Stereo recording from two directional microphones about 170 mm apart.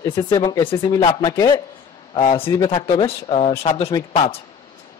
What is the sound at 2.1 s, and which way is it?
Speech, 35° left (ahead or behind).